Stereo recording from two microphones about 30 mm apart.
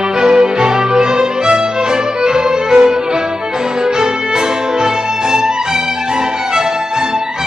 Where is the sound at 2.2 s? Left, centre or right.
Right.